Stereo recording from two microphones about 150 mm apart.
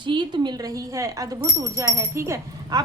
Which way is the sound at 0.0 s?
30° right (ahead or behind).